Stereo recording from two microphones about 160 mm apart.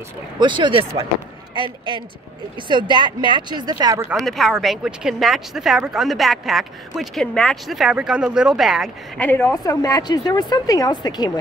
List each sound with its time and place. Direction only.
0.4 s speech: 30° right (ahead or behind)
4.1 s speech: centre (ahead or behind)
9.2 s speech: 15° left (ahead or behind)